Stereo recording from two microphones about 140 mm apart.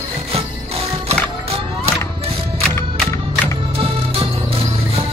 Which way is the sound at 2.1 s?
45° right (ahead or behind).